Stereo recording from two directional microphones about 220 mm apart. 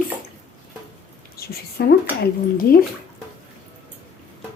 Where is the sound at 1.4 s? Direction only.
45° left (ahead or behind).